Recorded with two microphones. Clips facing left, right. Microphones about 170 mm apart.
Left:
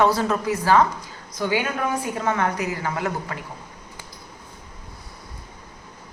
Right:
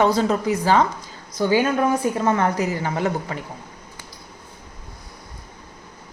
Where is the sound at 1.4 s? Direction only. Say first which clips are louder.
Right 5 dB; 35° right (ahead or behind).